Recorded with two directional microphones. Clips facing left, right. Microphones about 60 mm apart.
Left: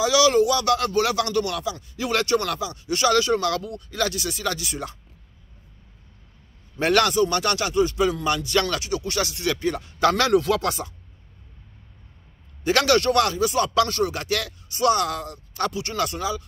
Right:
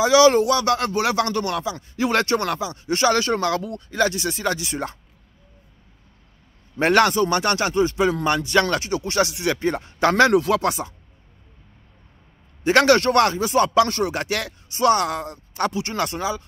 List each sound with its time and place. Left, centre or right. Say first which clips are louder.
0.0 s speech: right 4 dB; right
6.8 s speech: right 2 dB; right
9.6 s speech: left 1 dB; right
12.6 s speech: right 4 dB; right